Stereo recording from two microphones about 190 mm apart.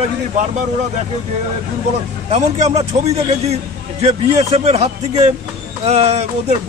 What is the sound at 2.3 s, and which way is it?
A man's voice, 35° right (ahead or behind).